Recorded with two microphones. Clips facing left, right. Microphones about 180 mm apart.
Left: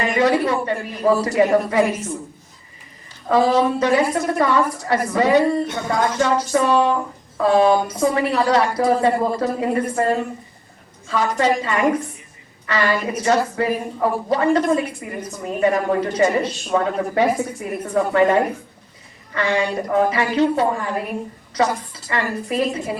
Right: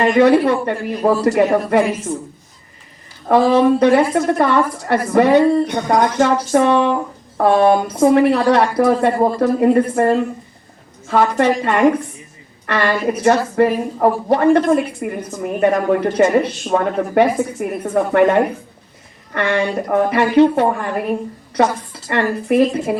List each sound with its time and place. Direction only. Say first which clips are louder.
0.0 s a woman's voice: right 6 dB; 60° right (ahead or behind)
3.2 s a woman's voice: right 4 dB; 60° right (ahead or behind)
5.6 s speech: right 5 dB; 15° right (ahead or behind)
6.1 s a woman's voice: right 4 dB; 60° right (ahead or behind)
11.1 s a woman's voice: right 4 dB; 60° right (ahead or behind)